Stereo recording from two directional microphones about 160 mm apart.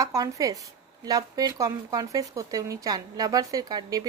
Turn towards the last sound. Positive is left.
turn(degrees=-25)  # may be behind; listen again after turning